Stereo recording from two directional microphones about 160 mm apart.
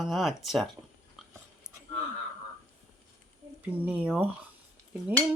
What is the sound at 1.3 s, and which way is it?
Dog, 20° right (ahead or behind).